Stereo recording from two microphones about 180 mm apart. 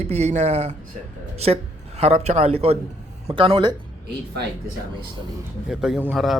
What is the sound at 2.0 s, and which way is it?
Speech, 35° right (ahead or behind).